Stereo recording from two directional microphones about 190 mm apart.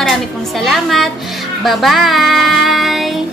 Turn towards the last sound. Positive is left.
turn(degrees=0)  # may be behind; listen again after turning